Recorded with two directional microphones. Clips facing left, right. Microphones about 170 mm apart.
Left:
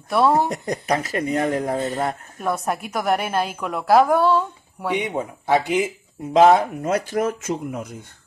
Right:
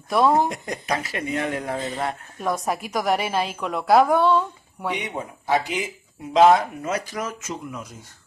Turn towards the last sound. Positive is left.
turn(degrees=55)  # may be behind; listen again after turning